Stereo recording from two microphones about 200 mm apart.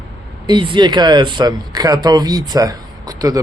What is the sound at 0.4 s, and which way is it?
Speech, 25° right (ahead or behind).